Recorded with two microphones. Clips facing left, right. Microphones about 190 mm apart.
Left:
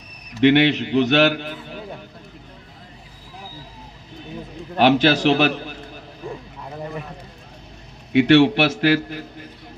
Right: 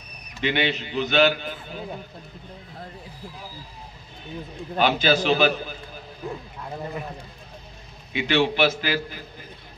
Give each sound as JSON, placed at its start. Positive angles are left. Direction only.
{"t": 0.4, "sound": "a man's voice", "side_deg": 75}
{"t": 4.7, "sound": "a man's voice", "side_deg": 75}
{"t": 8.1, "sound": "a man's voice", "side_deg": 70}